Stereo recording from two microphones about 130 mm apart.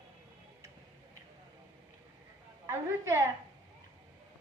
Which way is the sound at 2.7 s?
20° right (ahead or behind).